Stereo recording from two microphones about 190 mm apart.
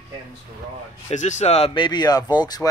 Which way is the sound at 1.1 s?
40° left (ahead or behind).